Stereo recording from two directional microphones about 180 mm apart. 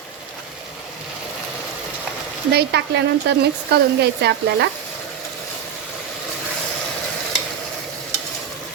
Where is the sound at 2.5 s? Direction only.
65° right (ahead or behind).